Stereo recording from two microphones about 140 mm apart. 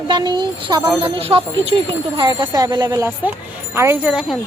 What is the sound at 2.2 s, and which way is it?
Speech, 35° right (ahead or behind).